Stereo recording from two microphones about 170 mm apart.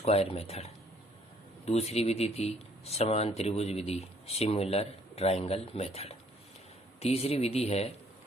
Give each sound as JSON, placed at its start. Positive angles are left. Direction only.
{"t": 0.0, "sound": "speech", "side_deg": 35}